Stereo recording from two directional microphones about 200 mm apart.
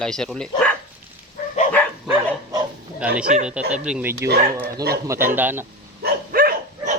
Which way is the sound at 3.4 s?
5° right (ahead or behind).